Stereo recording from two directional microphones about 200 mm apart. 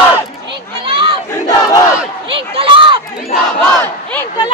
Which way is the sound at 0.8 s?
25° right (ahead or behind).